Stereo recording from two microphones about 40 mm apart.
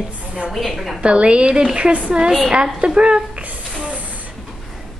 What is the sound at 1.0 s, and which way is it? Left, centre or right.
Speech, right.